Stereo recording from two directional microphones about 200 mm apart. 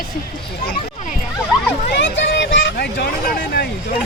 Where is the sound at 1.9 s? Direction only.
60° left (ahead or behind).